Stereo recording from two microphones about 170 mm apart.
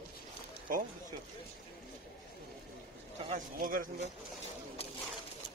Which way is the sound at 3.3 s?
50° right (ahead or behind).